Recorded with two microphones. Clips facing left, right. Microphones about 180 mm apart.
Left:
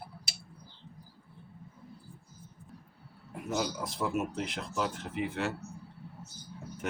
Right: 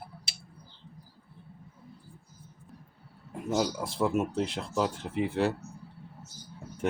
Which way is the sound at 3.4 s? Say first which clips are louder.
Right 4 dB; 30° right (ahead or behind).